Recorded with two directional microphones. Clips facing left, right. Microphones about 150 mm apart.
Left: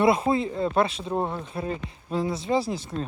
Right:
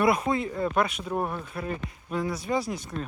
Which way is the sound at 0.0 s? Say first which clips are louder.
Left 3 dB; 25° left (ahead or behind).